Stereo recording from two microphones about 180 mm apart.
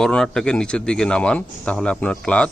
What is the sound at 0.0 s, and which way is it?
A man's voice, 5° left (ahead or behind).